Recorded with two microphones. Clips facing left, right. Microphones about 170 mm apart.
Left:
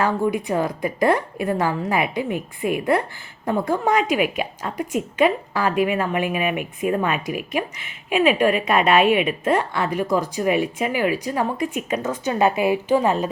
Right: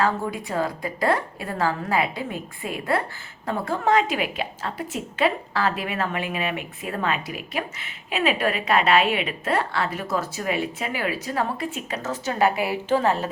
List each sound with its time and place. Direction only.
0.0 s a woman's voice: 20° left (ahead or behind)